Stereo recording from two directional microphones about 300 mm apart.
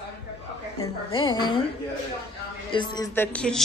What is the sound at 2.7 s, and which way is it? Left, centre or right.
Speech, centre.